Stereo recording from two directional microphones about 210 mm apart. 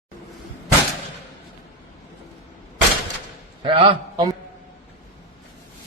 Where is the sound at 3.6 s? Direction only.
25° right (ahead or behind).